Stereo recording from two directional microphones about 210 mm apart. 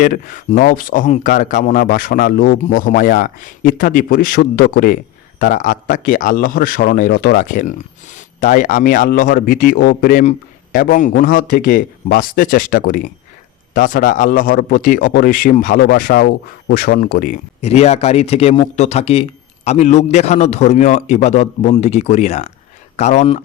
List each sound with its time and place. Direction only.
0.0 s a man's voice: 40° left (ahead or behind)